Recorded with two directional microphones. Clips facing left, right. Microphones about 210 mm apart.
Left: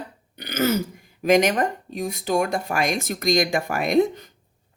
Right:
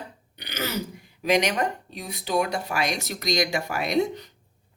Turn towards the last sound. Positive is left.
turn(degrees=50)  # may be behind; listen again after turning